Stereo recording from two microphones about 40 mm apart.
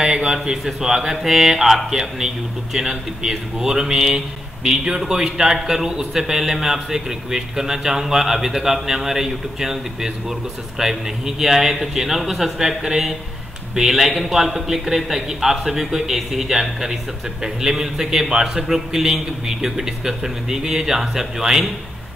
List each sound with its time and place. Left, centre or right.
0.0 s a man's voice: centre